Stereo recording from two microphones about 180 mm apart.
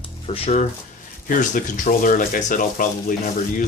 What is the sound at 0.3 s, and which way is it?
Speech, 35° left (ahead or behind).